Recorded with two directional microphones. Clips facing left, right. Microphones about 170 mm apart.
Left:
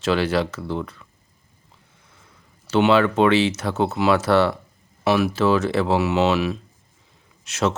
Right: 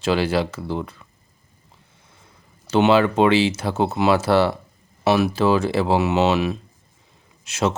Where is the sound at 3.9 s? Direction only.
25° right (ahead or behind).